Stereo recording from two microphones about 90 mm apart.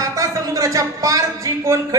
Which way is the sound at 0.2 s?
40° right (ahead or behind).